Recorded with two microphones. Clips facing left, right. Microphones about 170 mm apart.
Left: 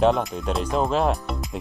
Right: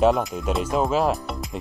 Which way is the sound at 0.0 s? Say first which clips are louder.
Right 1 dB; centre (ahead or behind).